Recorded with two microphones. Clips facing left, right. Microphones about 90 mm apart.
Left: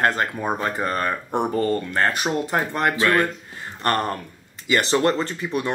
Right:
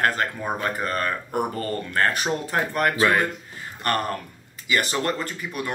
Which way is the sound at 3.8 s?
35° left (ahead or behind).